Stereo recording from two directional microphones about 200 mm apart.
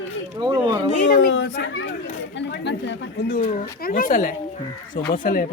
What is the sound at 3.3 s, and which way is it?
Speech, 45° left (ahead or behind).